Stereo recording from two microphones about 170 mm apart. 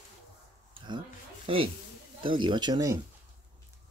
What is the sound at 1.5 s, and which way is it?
Speech, 30° right (ahead or behind).